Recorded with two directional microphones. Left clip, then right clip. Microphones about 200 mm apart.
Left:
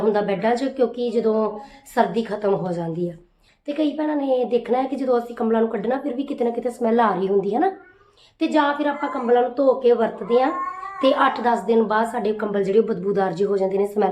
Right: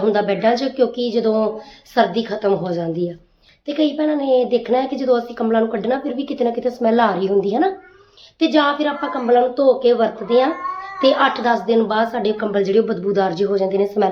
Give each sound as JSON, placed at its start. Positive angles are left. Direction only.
{"t": 0.0, "sound": "a woman's voice", "side_deg": 0}